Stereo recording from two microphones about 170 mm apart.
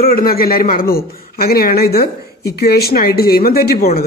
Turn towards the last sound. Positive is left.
turn(degrees=65)  # may be behind; listen again after turning